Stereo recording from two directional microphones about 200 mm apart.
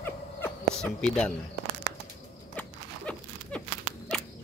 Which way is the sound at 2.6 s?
5° left (ahead or behind).